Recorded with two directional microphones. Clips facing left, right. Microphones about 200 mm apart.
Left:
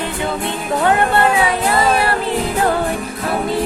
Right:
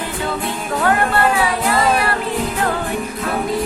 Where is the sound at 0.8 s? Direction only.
20° left (ahead or behind).